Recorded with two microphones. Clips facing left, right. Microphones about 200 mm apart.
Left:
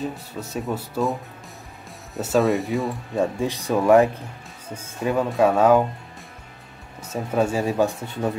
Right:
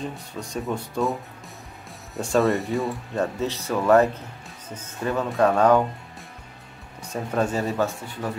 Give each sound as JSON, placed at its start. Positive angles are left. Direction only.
{"t": 0.0, "sound": "speech", "side_deg": 5}
{"t": 2.1, "sound": "speech", "side_deg": 5}
{"t": 3.2, "sound": "speech", "side_deg": 15}
{"t": 7.1, "sound": "speech", "side_deg": 5}